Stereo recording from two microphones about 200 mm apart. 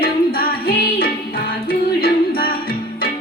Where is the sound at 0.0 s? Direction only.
50° left (ahead or behind).